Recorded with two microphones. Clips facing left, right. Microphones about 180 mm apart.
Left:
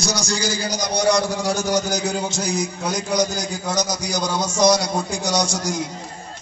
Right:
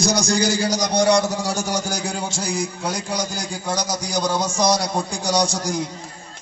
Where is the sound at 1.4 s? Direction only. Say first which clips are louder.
Left 3 dB; 35° right (ahead or behind).